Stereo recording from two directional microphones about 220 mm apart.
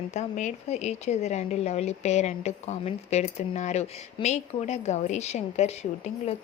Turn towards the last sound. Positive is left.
turn(degrees=30)  # may be behind; listen again after turning